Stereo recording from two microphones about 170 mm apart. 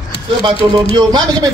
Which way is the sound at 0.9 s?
25° right (ahead or behind).